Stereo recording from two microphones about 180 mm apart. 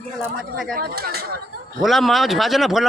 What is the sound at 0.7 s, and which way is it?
Speech, 60° right (ahead or behind).